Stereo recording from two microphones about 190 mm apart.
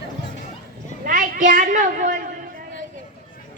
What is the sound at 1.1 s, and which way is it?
A woman's voice, 45° right (ahead or behind).